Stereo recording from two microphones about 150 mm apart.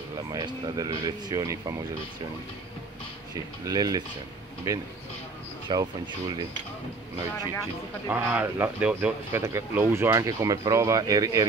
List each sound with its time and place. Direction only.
0.3 s speech: 30° right (ahead or behind)
3.6 s speech: 25° right (ahead or behind)
8.1 s speech: 10° right (ahead or behind)